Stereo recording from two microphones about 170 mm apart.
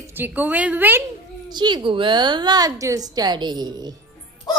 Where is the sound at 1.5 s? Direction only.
25° right (ahead or behind).